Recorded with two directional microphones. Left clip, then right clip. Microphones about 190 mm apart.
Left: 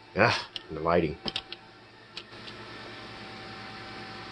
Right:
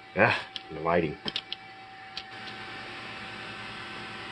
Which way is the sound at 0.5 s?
5° left (ahead or behind).